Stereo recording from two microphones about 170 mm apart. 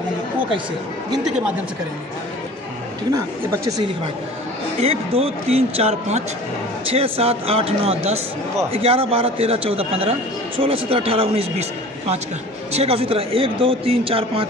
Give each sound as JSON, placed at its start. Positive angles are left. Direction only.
{"t": 3.1, "sound": "speech", "side_deg": -20}
{"t": 4.7, "sound": "speech", "side_deg": -35}
{"t": 12.7, "sound": "speech", "side_deg": -35}